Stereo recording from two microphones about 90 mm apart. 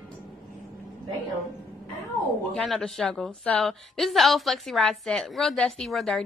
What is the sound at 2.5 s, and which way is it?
A woman's voice, 5° left (ahead or behind).